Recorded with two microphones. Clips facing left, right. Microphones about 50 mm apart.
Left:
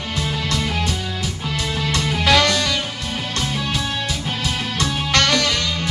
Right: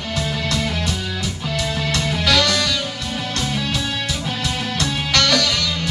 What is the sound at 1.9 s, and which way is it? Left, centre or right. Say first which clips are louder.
Music: left 3 dB; left.